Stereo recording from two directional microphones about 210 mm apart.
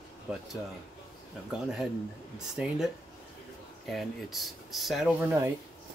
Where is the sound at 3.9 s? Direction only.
Centre (ahead or behind).